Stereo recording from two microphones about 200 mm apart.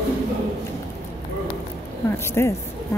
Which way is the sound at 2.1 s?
10° left (ahead or behind).